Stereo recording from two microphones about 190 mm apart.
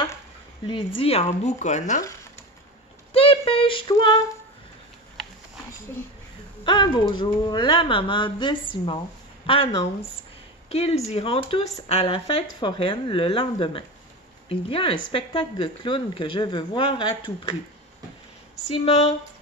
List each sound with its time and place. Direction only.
0.7 s speech: 25° left (ahead or behind)
3.1 s female singing: 30° left (ahead or behind)
6.6 s a woman's voice: 25° left (ahead or behind)
18.7 s speech: 30° left (ahead or behind)